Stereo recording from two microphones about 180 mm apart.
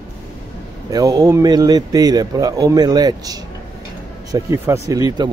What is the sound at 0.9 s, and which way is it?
Speech, 20° right (ahead or behind).